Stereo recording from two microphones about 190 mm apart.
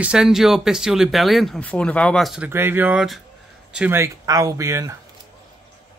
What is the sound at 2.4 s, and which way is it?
Speech, 10° right (ahead or behind).